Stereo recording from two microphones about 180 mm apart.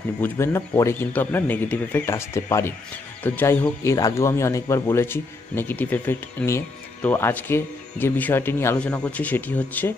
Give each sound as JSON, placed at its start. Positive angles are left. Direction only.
{"t": 0.2, "sound": "speech", "side_deg": 15}